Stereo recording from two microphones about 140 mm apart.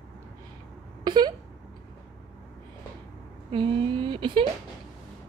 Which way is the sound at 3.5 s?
35° right (ahead or behind).